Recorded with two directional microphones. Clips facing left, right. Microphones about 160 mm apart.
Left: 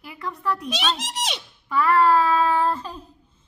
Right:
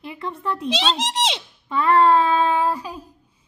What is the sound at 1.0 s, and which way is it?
Speech, 90° right.